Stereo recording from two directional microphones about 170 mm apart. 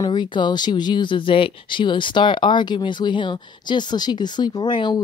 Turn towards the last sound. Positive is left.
turn(degrees=25)  # may be behind; listen again after turning